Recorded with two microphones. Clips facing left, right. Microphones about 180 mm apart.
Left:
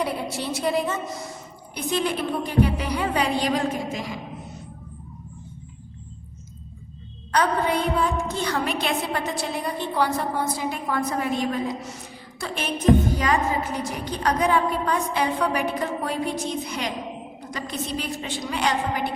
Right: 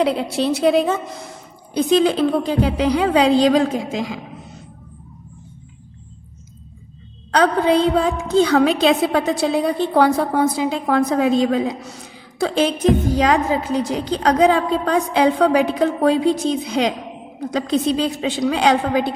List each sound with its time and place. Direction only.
0.0 s a woman's voice: 85° right
7.3 s a woman's voice: 90° right